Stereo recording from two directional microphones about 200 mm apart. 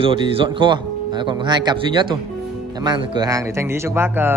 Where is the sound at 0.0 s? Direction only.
25° right (ahead or behind).